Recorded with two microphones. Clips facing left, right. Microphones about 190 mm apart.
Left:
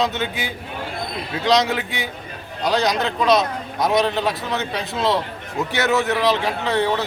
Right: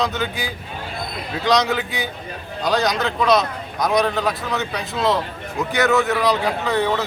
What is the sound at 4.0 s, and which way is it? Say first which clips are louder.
Speech: even; 20° left (ahead or behind).